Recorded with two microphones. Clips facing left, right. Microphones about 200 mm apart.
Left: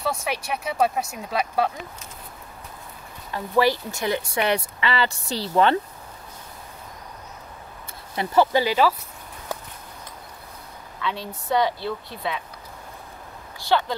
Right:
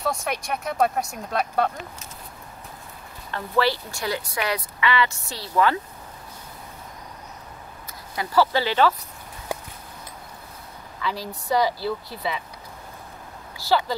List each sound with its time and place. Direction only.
0.0 s speech: centre (ahead or behind)
3.3 s speech: 15° left (ahead or behind)
8.2 s speech: 20° left (ahead or behind)
11.0 s speech: centre (ahead or behind)
13.7 s speech: 5° right (ahead or behind)